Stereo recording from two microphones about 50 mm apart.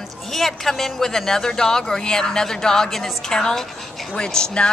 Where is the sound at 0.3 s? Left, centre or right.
Centre.